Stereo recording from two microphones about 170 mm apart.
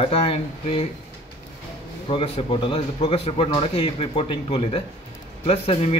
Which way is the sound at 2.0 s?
30° left (ahead or behind).